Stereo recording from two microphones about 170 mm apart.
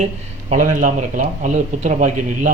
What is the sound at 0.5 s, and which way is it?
Speech, 50° right (ahead or behind).